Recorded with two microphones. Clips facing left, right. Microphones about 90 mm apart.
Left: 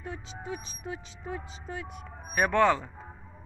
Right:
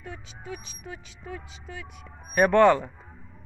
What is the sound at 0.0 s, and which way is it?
Speech, 30° left (ahead or behind).